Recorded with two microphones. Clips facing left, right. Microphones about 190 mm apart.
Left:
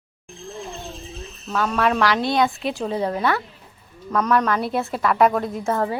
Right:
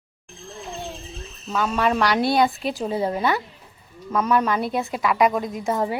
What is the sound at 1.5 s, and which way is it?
A woman's voice, 5° right (ahead or behind).